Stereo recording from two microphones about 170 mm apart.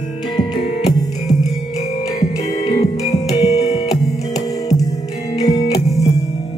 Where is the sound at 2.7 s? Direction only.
25° left (ahead or behind).